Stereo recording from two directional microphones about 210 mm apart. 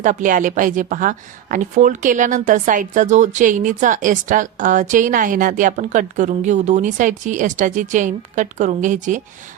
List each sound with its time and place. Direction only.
0.0 s speech: 40° right (ahead or behind)